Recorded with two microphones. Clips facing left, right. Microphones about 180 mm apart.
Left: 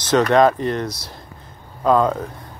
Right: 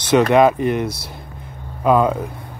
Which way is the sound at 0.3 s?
10° right (ahead or behind).